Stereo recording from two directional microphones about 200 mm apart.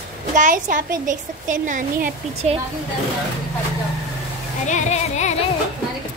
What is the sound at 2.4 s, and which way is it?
Speech, 30° right (ahead or behind).